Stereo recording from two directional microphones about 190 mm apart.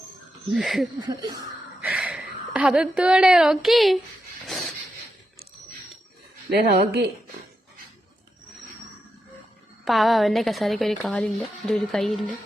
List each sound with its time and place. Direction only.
0.5 s speech: centre (ahead or behind)
0.9 s a sound: 20° right (ahead or behind)
1.8 s a woman's voice: 5° right (ahead or behind)
4.4 s a sound: centre (ahead or behind)
6.5 s speech: 55° right (ahead or behind)
9.8 s speech: centre (ahead or behind)